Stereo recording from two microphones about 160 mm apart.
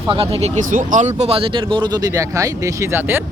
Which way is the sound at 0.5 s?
50° right (ahead or behind).